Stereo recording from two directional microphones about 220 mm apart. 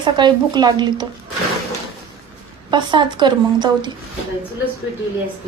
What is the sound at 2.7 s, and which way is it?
A woman's voice, 20° right (ahead or behind).